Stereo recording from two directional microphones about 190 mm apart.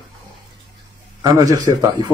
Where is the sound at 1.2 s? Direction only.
20° right (ahead or behind).